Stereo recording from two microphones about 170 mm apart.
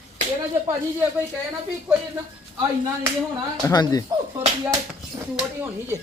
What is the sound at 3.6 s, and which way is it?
Speech, 20° left (ahead or behind).